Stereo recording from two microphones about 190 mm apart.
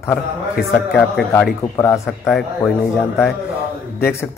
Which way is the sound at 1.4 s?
5° left (ahead or behind).